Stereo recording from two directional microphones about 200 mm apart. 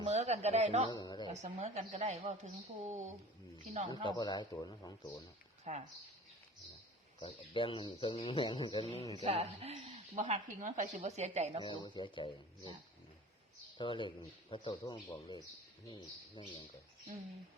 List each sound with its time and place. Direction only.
0.0 s a woman's voice: 30° right (ahead or behind)
0.9 s a man's voice: 20° left (ahead or behind)
1.3 s a woman's voice: 35° right (ahead or behind)
4.2 s a man's voice: 20° left (ahead or behind)
5.7 s a woman's voice: 35° right (ahead or behind)
7.2 s a man's voice: 25° left (ahead or behind)
9.2 s a woman's voice: 30° right (ahead or behind)
11.6 s a man's voice: 25° left (ahead or behind)
13.7 s a man's voice: 25° left (ahead or behind)